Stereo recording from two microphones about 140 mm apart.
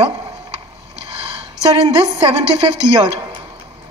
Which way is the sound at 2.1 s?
40° right (ahead or behind).